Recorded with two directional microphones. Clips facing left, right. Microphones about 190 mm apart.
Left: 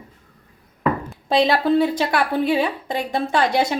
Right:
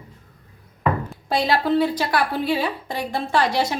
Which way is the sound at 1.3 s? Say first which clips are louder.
Left 3 dB; 20° left (ahead or behind).